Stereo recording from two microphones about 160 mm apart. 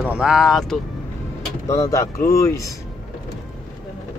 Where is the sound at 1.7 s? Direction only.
20° left (ahead or behind).